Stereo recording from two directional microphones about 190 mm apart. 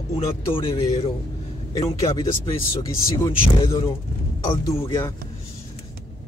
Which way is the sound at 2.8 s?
25° left (ahead or behind).